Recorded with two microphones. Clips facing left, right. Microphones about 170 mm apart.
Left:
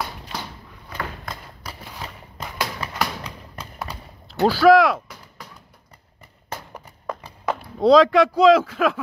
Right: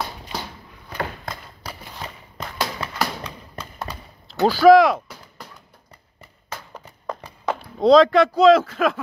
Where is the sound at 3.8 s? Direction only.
10° left (ahead or behind).